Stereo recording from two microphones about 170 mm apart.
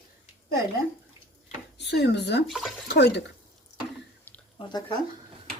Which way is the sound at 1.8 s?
80° left.